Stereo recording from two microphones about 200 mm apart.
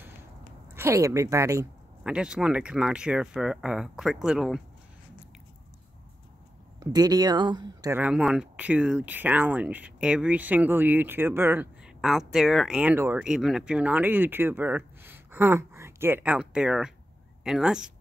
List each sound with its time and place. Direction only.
0.7 s speech: 15° right (ahead or behind)
2.0 s speech: 5° right (ahead or behind)
6.8 s speech: 20° right (ahead or behind)
8.0 s speech: 5° right (ahead or behind)